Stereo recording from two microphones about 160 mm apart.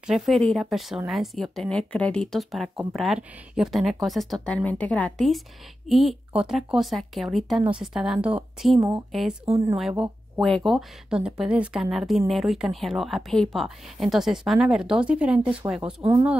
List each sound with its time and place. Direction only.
0.0 s speech: centre (ahead or behind)
9.8 s speech: centre (ahead or behind)
16.0 s speech: 30° right (ahead or behind)